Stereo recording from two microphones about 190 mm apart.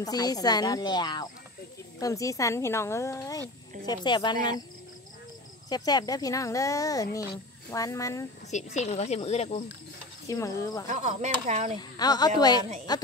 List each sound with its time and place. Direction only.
0.0 s speech: 20° left (ahead or behind)
5.7 s speech: 20° left (ahead or behind)
8.5 s speech: 35° left (ahead or behind)
10.2 s speech: 15° left (ahead or behind)
10.9 s speech: 40° right (ahead or behind)
12.0 s speech: 20° left (ahead or behind)